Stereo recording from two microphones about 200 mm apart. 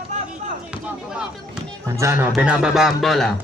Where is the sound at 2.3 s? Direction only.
5° right (ahead or behind).